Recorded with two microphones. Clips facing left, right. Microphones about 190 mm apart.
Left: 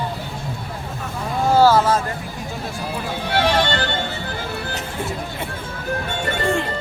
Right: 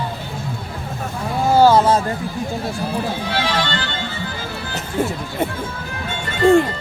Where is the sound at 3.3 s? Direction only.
60° left (ahead or behind).